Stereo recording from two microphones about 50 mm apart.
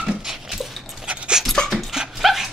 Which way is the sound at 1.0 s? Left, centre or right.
Right.